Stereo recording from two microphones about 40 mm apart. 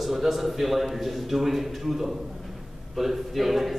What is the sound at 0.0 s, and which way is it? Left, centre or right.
A man's voice, centre.